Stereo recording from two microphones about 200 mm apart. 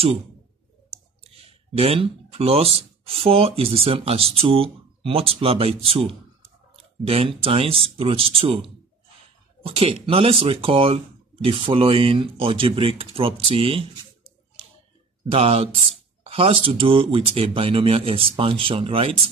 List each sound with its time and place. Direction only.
0.8 s speech: 30° right (ahead or behind)
15.2 s speech: 30° right (ahead or behind)